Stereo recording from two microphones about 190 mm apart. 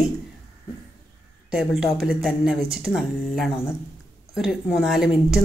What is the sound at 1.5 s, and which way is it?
Speech, centre (ahead or behind).